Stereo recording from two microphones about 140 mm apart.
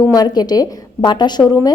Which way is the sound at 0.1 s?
30° left (ahead or behind).